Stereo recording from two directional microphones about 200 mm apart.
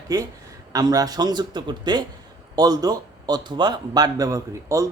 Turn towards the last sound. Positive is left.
turn(degrees=-15)  # may be behind; listen again after turning